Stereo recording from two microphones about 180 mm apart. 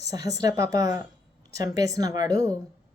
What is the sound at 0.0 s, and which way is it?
Speech, 20° right (ahead or behind).